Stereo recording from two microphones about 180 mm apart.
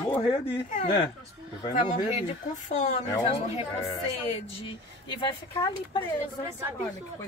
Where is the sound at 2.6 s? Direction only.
40° left (ahead or behind).